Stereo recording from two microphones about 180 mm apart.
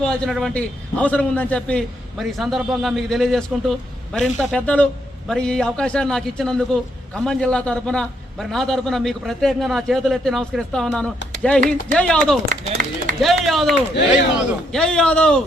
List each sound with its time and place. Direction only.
0.0 s a man's voice: centre (ahead or behind)
12.6 s speech: 40° right (ahead or behind)
13.2 s a man's voice: centre (ahead or behind)